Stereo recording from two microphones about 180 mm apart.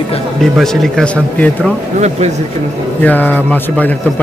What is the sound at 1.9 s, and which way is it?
Speech, 40° right (ahead or behind).